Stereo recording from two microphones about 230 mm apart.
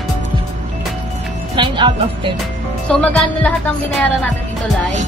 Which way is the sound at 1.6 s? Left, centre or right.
Right.